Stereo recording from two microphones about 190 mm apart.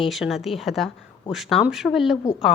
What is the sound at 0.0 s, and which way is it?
A woman's voice, centre (ahead or behind).